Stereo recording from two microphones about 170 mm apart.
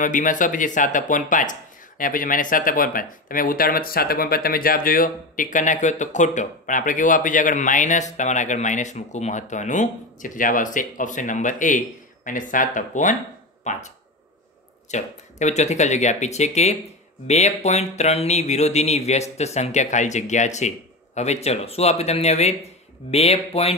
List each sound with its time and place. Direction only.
0.0 s speech: 50° left (ahead or behind)
14.9 s speech: 45° left (ahead or behind)